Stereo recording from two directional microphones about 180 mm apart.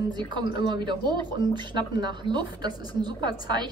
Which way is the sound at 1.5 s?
25° right (ahead or behind).